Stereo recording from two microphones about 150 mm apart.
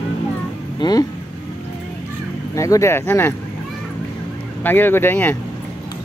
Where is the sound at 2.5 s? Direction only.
20° left (ahead or behind).